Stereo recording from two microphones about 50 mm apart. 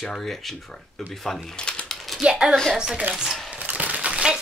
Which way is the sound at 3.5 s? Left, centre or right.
Right.